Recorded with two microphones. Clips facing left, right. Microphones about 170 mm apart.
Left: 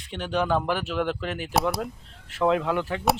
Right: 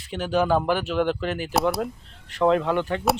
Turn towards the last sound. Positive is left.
turn(degrees=0)  # may be behind; listen again after turning